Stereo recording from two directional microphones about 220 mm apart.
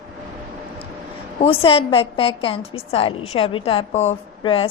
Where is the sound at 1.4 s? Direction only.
25° left (ahead or behind).